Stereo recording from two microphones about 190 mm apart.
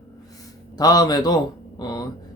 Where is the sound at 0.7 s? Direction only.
20° left (ahead or behind).